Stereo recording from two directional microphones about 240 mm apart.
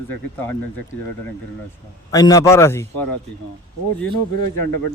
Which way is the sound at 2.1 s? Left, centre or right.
Centre.